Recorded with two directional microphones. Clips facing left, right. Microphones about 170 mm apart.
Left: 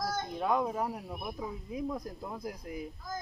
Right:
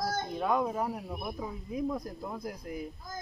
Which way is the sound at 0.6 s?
Centre (ahead or behind).